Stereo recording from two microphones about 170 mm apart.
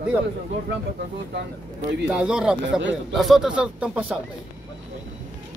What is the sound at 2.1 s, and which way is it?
Speech, 5° right (ahead or behind).